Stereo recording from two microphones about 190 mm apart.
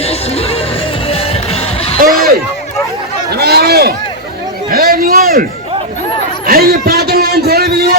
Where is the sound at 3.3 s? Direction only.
55° right (ahead or behind).